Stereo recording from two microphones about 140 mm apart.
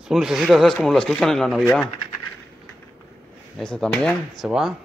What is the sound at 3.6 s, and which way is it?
Speech, 5° left (ahead or behind).